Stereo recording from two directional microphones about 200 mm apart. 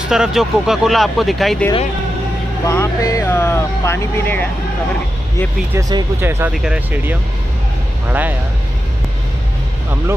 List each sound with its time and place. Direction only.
0.1 s speech: centre (ahead or behind)
2.6 s speech: 15° left (ahead or behind)
5.8 s speech: 15° right (ahead or behind)